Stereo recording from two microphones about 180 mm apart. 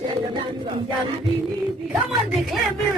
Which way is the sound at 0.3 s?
25° right (ahead or behind).